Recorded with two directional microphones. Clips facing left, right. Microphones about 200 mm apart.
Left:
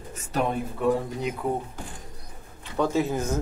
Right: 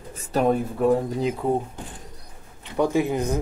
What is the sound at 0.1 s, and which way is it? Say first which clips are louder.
Speech: right 6 dB; 35° right (ahead or behind).